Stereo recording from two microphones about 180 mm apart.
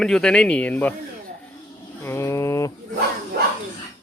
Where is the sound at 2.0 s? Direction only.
15° left (ahead or behind).